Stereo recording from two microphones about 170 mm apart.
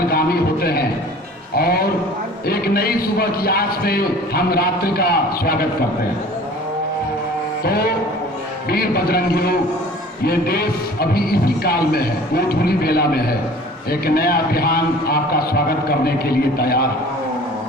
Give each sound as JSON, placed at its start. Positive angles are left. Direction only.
{"t": 0.1, "sound": "a man's voice", "side_deg": 65}
{"t": 7.6, "sound": "a man's voice", "side_deg": 65}